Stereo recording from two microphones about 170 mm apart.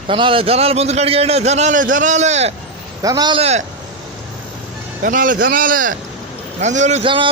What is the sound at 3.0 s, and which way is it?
Speech, 25° right (ahead or behind).